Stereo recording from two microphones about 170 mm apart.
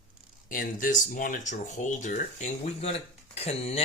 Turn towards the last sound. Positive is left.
turn(degrees=35)  # may be behind; listen again after turning